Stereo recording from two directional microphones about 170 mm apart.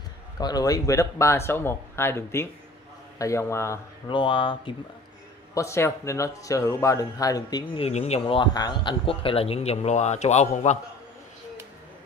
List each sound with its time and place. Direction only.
0.4 s speech: 25° left (ahead or behind)
4.1 s speech: 30° left (ahead or behind)
5.5 s speech: 15° left (ahead or behind)
7.8 s a man's voice: 40° left (ahead or behind)